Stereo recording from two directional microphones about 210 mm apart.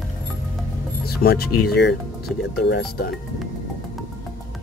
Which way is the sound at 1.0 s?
45° left (ahead or behind).